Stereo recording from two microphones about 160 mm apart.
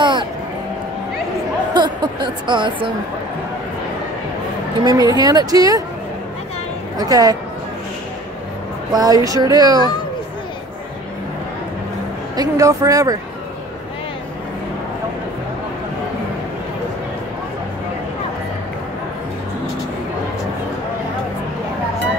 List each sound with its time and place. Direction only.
0.0 s a sound: 30° right (ahead or behind)
1.7 s speech: 30° right (ahead or behind)
4.8 s speech: 25° right (ahead or behind)
7.0 s speech: 25° right (ahead or behind)
8.9 s speech: 25° right (ahead or behind)
12.4 s speech: 20° right (ahead or behind)